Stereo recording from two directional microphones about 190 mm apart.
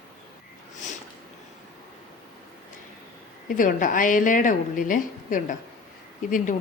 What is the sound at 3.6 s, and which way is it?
Speech, 45° left (ahead or behind).